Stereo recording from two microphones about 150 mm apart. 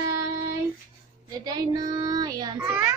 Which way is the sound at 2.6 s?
10° right (ahead or behind).